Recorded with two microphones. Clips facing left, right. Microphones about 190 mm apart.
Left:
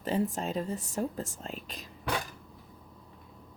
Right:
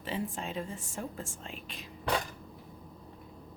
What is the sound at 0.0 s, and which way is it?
Speech, 40° left (ahead or behind).